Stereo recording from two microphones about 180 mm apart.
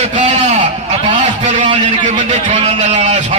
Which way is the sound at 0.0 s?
40° right (ahead or behind).